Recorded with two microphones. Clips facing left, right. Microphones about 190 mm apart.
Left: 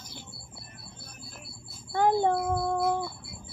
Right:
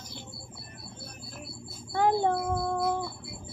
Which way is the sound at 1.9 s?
Centre (ahead or behind).